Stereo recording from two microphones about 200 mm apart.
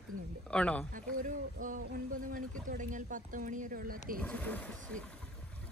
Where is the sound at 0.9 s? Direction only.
40° right (ahead or behind).